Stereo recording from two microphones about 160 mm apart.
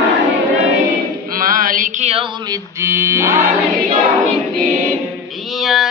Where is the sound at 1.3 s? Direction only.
60° right (ahead or behind).